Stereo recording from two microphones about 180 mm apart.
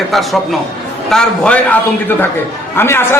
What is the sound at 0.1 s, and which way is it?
A man's voice, centre (ahead or behind).